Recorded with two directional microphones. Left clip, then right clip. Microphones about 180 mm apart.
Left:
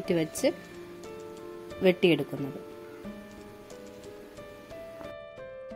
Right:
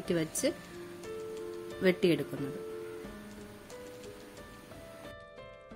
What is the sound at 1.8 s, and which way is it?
Speech, 10° left (ahead or behind).